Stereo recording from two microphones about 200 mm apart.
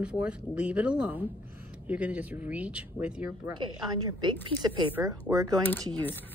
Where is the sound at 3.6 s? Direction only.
20° right (ahead or behind).